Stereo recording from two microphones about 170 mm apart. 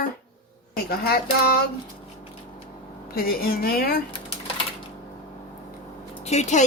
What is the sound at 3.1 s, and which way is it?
Speech, 60° left (ahead or behind).